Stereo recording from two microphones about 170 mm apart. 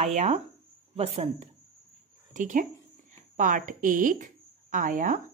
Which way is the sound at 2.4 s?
50° right (ahead or behind).